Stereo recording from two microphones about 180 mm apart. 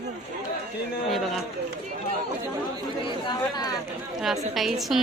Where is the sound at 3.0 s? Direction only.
25° left (ahead or behind).